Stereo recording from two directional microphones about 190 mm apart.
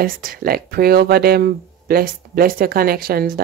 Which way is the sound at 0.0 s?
50° right (ahead or behind).